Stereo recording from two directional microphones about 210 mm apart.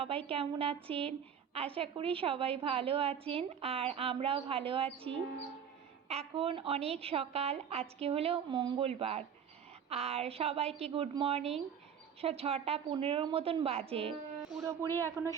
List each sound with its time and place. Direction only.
0.0 s a woman's voice: 25° right (ahead or behind)
14.8 s speech: 10° left (ahead or behind)